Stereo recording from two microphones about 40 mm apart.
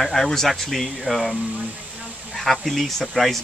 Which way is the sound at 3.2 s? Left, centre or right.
Left.